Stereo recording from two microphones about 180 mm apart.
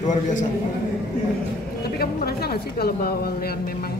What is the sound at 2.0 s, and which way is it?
A woman's voice, 60° left (ahead or behind).